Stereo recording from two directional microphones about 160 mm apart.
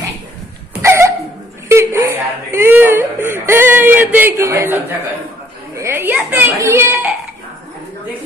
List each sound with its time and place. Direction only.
0.8 s a sound: 15° right (ahead or behind)
1.7 s whimper: 15° right (ahead or behind)
5.8 s a child's voice: 15° right (ahead or behind)